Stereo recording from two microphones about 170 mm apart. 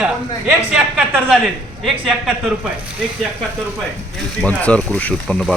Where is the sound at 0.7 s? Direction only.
5° right (ahead or behind).